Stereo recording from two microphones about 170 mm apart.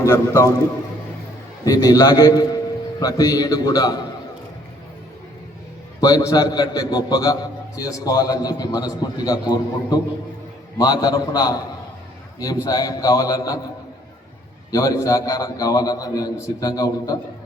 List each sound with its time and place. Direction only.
0.0 s a man's voice: 15° left (ahead or behind)
1.6 s a man's voice: 20° left (ahead or behind)
6.0 s a man's voice: 20° left (ahead or behind)
12.6 s a man's voice: 20° left (ahead or behind)
14.7 s a man's voice: 20° left (ahead or behind)